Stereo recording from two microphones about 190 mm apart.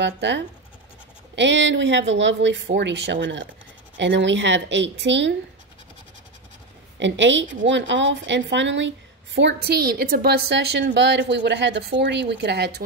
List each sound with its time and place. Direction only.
0.0 s speech: 65° right (ahead or behind)
7.0 s a woman's voice: 70° right (ahead or behind)